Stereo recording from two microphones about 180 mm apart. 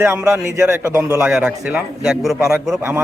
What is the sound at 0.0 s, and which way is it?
A man's voice, 15° right (ahead or behind).